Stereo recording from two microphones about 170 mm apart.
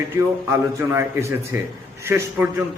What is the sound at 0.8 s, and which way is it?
A man's voice, 15° right (ahead or behind).